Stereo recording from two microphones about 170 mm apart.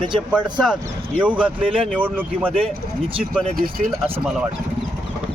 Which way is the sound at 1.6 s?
30° right (ahead or behind).